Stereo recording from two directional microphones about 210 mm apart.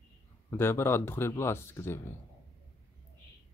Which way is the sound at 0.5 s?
10° left (ahead or behind).